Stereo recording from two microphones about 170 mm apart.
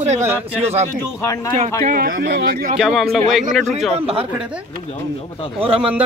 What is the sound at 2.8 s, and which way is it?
Speech, centre (ahead or behind).